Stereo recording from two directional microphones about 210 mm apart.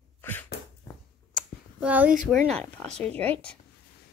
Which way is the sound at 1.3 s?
5° right (ahead or behind).